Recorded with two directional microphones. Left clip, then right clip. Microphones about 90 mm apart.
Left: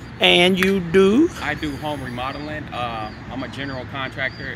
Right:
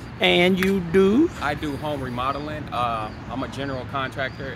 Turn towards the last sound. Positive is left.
turn(degrees=-55)  # may be behind; listen again after turning